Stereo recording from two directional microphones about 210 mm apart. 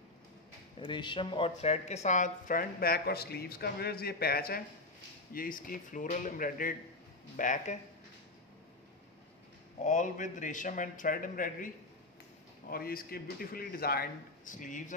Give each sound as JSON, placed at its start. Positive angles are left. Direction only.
{"t": 0.7, "sound": "a man's voice", "side_deg": 20}
{"t": 9.8, "sound": "a man's voice", "side_deg": 35}